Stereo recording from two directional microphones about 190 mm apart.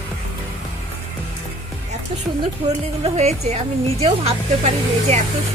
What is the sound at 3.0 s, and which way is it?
Speech, 35° right (ahead or behind).